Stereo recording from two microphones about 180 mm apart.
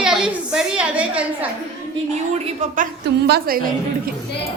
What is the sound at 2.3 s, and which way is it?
Speech, 40° right (ahead or behind).